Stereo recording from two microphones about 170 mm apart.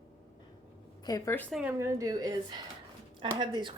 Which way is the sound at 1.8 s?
20° right (ahead or behind).